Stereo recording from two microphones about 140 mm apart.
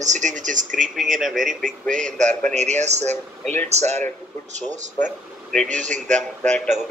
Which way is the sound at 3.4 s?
10° left (ahead or behind).